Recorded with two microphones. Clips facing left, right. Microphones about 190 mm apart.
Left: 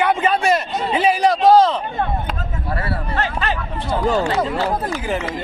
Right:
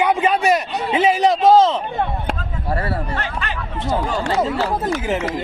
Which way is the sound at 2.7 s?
45° right (ahead or behind).